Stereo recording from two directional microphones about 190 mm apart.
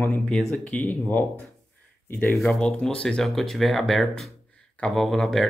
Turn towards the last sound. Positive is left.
turn(degrees=0)  # may be behind; listen again after turning